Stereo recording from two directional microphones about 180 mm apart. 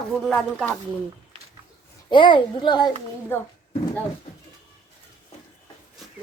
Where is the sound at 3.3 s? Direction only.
15° left (ahead or behind).